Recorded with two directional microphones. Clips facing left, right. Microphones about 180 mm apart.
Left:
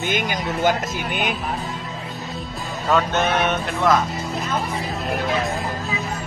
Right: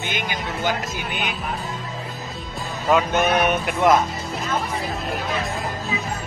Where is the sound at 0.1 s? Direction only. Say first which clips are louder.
Left 5 dB; 45° left (ahead or behind).